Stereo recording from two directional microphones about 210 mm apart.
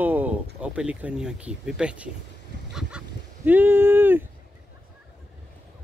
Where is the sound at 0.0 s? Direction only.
10° right (ahead or behind).